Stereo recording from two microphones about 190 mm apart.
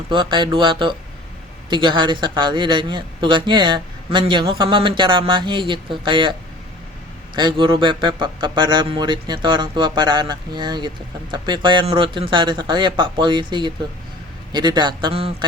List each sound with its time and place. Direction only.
0.1 s speech: 25° right (ahead or behind)
7.3 s speech: 25° right (ahead or behind)